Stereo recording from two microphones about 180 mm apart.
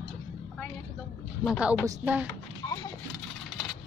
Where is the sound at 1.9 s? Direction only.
10° right (ahead or behind).